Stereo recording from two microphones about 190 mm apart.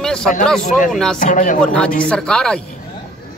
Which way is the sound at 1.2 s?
45° left (ahead or behind).